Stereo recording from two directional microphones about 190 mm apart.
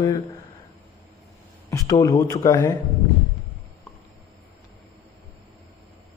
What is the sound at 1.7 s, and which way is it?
A man's voice, 15° left (ahead or behind).